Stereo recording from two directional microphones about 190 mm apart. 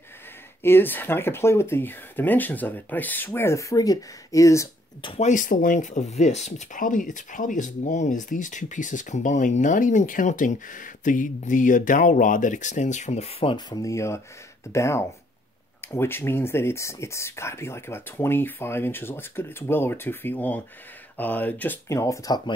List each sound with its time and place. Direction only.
0.6 s speech: 10° left (ahead or behind)
5.1 s speech: 40° left (ahead or behind); by 22.4 s 15° left (ahead or behind)